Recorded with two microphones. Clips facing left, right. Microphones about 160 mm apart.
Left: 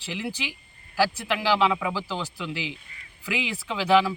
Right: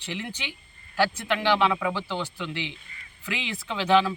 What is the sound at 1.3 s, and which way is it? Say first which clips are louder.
Speech: right 1 dB; 10° left (ahead or behind).